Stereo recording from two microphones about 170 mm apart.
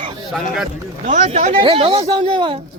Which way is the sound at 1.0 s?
45° right (ahead or behind).